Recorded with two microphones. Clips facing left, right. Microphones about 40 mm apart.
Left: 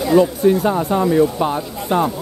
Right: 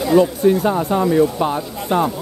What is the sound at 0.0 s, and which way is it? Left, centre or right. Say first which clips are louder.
Speech: even; centre.